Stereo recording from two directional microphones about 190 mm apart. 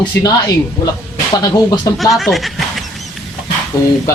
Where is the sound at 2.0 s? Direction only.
Centre (ahead or behind).